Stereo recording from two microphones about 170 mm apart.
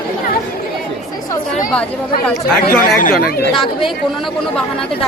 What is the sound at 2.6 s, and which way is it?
Speech, 55° left (ahead or behind).